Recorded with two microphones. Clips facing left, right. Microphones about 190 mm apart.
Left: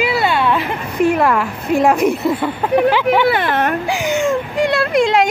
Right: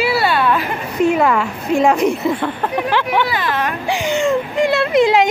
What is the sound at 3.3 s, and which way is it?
Speech, 60° left (ahead or behind).